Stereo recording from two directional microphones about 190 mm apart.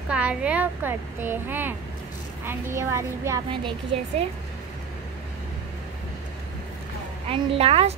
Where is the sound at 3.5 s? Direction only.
25° right (ahead or behind).